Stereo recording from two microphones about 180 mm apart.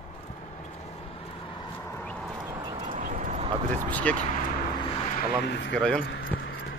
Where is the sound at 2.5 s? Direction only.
30° right (ahead or behind).